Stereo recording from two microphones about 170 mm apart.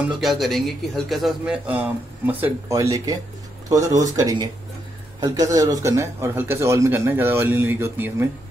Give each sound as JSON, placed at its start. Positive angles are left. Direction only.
{"t": 0.2, "sound": "a man's voice", "side_deg": 0}